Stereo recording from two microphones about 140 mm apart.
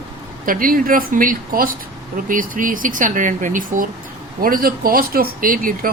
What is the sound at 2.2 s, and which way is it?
Speech, 70° right (ahead or behind).